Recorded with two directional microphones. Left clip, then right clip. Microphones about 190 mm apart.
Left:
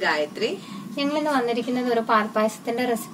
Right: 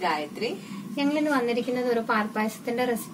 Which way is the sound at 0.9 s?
15° left (ahead or behind).